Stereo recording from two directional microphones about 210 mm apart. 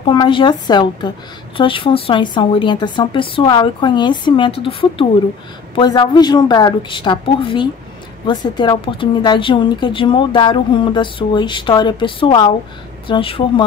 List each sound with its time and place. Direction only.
0.0 s a woman's voice: 20° left (ahead or behind)